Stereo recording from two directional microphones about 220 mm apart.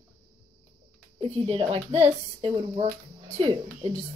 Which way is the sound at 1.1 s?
25° right (ahead or behind).